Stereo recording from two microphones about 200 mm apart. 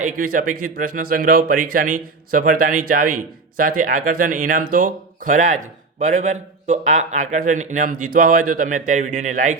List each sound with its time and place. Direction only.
0.0 s speech: 40° right (ahead or behind)